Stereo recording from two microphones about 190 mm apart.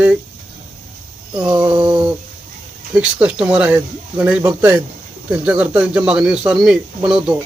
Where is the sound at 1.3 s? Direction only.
20° right (ahead or behind).